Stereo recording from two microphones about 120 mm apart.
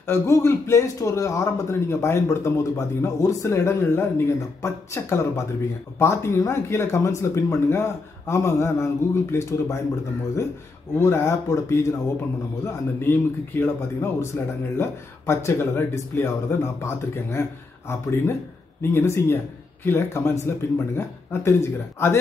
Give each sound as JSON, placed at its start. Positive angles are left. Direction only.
{"t": 0.0, "sound": "a man's voice", "side_deg": 20}
{"t": 11.0, "sound": "a man's voice", "side_deg": 25}